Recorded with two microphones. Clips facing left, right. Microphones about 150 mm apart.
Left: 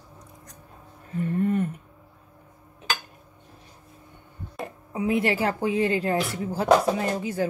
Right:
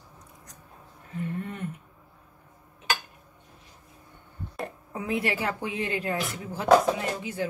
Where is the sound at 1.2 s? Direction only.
45° left (ahead or behind).